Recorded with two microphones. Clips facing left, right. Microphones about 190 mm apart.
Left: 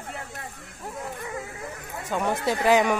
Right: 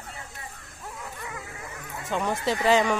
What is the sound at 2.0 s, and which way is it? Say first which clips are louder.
Speech: left 1 dB; 10° left (ahead or behind).